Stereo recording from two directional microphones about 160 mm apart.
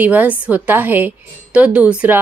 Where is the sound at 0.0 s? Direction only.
10° right (ahead or behind).